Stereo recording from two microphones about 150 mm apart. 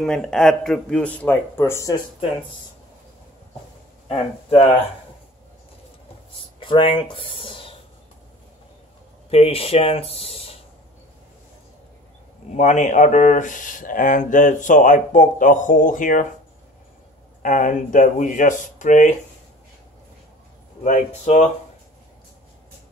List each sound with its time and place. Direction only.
0.0 s speech: 5° left (ahead or behind); by 2.0 s 20° left (ahead or behind)
4.1 s speech: 40° left (ahead or behind)
6.6 s speech: 35° left (ahead or behind)
9.3 s speech: 40° left (ahead or behind)
12.5 s speech: 55° left (ahead or behind)
17.4 s speech: 60° left (ahead or behind)
20.8 s speech: 50° left (ahead or behind)